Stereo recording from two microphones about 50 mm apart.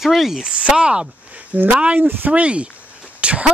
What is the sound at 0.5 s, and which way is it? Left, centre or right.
Speech, right.